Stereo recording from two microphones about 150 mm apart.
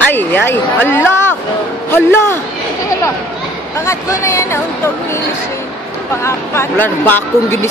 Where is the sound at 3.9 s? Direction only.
20° left (ahead or behind).